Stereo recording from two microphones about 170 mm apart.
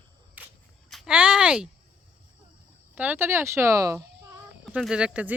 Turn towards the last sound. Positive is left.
turn(degrees=-10)  # may be behind; listen again after turning